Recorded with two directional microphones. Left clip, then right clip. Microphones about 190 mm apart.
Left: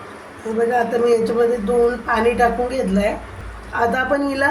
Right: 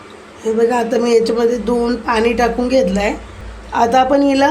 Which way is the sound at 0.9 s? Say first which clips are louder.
Right 3 dB; 55° right (ahead or behind).